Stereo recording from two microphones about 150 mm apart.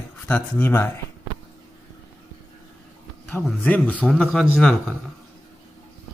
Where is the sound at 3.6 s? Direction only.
10° left (ahead or behind).